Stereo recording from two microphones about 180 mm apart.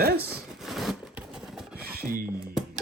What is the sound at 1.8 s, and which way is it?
Music, 55° right (ahead or behind).